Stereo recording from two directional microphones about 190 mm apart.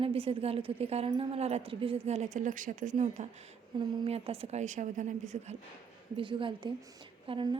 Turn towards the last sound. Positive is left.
turn(degrees=-25)  # may be behind; listen again after turning